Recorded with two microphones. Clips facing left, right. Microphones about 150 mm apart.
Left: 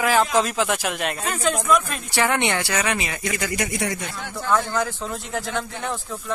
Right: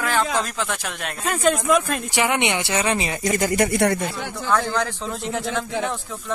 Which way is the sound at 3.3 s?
45° right (ahead or behind).